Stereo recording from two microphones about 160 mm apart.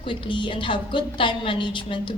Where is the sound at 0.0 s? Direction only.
30° left (ahead or behind).